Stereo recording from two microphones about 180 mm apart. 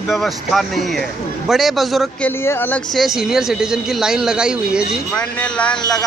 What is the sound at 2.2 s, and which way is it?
Speech, 10° left (ahead or behind).